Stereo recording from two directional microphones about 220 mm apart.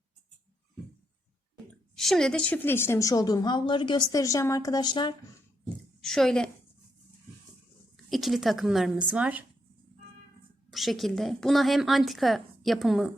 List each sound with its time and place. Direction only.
2.0 s a woman's voice: centre (ahead or behind); by 5.1 s 20° left (ahead or behind)
6.0 s a woman's voice: centre (ahead or behind)
8.1 s a woman's voice: centre (ahead or behind)
10.7 s a woman's voice: centre (ahead or behind)